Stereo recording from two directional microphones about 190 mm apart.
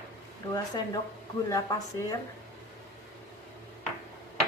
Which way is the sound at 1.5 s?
20° left (ahead or behind).